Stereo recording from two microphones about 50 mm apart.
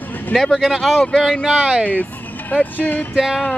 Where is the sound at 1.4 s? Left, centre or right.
Centre.